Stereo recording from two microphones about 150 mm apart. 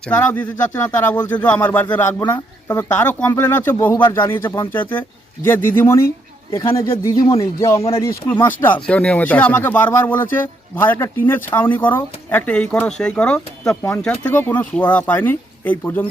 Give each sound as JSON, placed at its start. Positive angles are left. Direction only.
{"t": 0.0, "sound": "speech", "side_deg": 10}
{"t": 7.8, "sound": "speech", "side_deg": 40}
{"t": 8.3, "sound": "speech", "side_deg": 15}